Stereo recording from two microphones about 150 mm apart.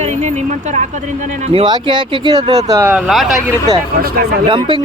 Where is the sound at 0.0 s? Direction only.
50° right (ahead or behind).